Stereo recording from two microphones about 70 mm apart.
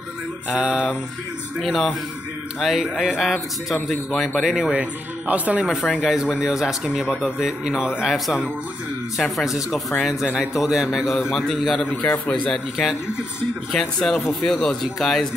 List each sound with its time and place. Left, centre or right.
0.5 s speech: centre
1.6 s a man's voice: centre
4.1 s a man's voice: centre
4.5 s speech: centre
5.3 s speech: right
5.9 s speech: centre
9.2 s a man's voice: centre